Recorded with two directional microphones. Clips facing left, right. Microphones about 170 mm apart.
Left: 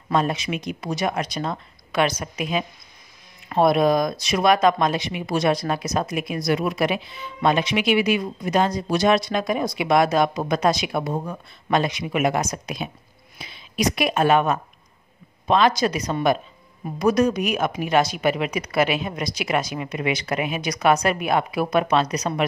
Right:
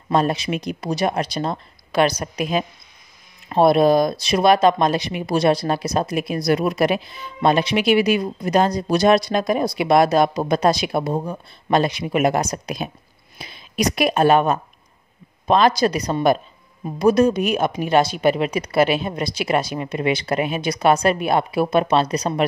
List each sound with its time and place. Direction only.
0.1 s speech: 35° right (ahead or behind)